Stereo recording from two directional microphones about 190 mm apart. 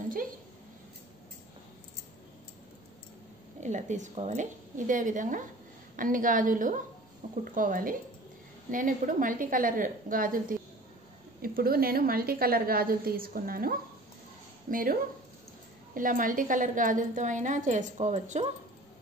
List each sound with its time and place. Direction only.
3.6 s a woman's voice: 40° right (ahead or behind)
11.4 s a woman's voice: 50° right (ahead or behind)